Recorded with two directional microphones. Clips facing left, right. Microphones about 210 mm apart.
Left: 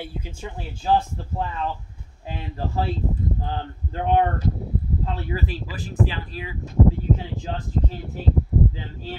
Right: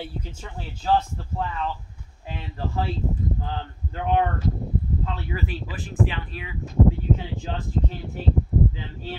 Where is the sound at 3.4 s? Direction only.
35° left (ahead or behind).